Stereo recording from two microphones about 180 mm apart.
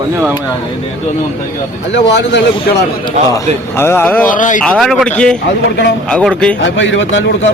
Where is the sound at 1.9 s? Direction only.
75° left (ahead or behind).